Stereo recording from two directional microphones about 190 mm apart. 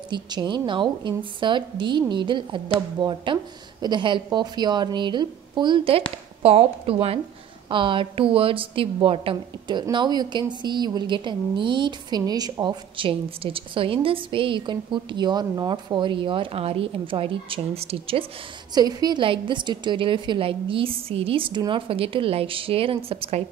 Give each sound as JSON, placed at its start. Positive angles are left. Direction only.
{"t": 0.1, "sound": "a woman's voice", "side_deg": -25}